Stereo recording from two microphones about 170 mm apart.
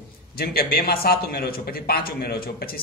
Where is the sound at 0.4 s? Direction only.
65° left (ahead or behind).